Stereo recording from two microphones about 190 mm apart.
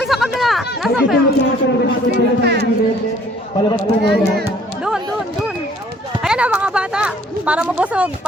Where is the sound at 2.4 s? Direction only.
60° right (ahead or behind).